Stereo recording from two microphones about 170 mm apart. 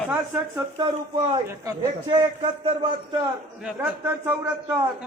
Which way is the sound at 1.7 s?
25° right (ahead or behind).